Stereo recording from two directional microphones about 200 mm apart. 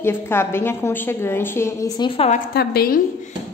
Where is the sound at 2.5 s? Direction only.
50° left (ahead or behind).